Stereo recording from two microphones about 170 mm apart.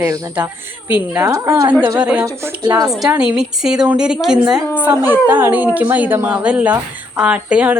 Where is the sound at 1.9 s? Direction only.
5° right (ahead or behind).